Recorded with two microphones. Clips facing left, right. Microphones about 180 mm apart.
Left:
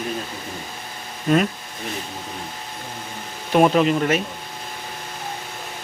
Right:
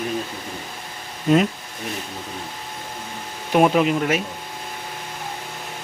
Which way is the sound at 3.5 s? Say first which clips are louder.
Left 1 dB; 10° right (ahead or behind).